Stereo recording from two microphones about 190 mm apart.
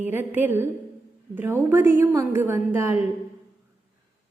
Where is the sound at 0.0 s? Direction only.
10° right (ahead or behind).